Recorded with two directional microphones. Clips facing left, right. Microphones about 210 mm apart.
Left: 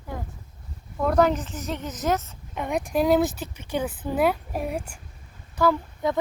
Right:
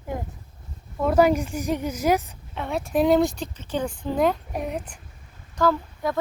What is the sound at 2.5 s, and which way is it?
Speech, 15° left (ahead or behind).